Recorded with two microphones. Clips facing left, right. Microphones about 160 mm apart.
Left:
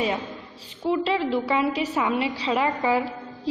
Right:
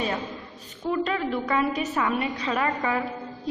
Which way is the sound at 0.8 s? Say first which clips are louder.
Left 3 dB; 25° left (ahead or behind).